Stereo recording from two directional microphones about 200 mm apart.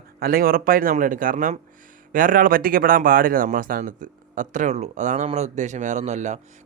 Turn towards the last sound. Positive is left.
turn(degrees=-35)  # may be behind; listen again after turning